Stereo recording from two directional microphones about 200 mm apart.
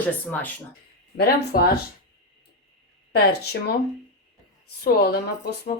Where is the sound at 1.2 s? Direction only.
50° left (ahead or behind).